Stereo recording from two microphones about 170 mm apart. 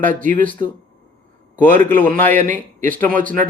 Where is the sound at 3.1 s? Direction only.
50° right (ahead or behind).